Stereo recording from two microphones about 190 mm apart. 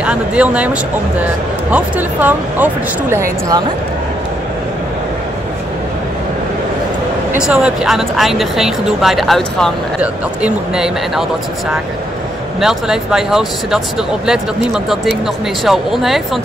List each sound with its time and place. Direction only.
0.0 s speech: 5° right (ahead or behind)
1.7 s speech: 10° right (ahead or behind)
7.4 s speech: 5° right (ahead or behind)
12.5 s speech: 5° right (ahead or behind)